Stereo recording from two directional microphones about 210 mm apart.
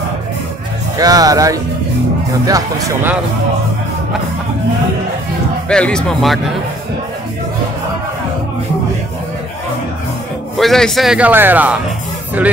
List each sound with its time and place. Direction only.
0.9 s speech: 15° right (ahead or behind)
5.7 s speech: 5° left (ahead or behind)
10.6 s speech: centre (ahead or behind)